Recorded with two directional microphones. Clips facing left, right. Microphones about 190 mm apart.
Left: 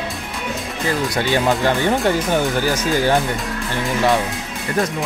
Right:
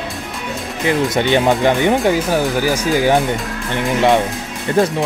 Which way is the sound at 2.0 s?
5° right (ahead or behind).